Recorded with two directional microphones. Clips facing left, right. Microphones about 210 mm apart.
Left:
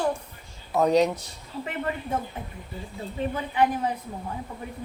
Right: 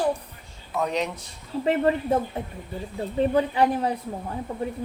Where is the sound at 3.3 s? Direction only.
35° right (ahead or behind).